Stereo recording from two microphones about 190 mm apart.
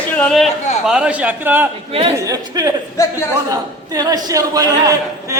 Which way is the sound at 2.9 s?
15° left (ahead or behind).